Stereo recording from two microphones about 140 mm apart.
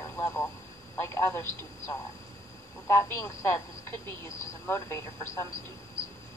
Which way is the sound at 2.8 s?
20° left (ahead or behind).